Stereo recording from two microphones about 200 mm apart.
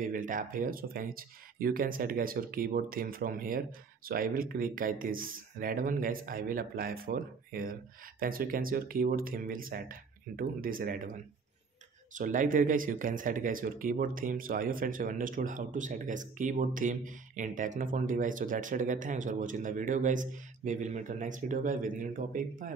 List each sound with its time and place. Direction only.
0.0 s speech: 40° right (ahead or behind)
12.1 s speech: 40° right (ahead or behind)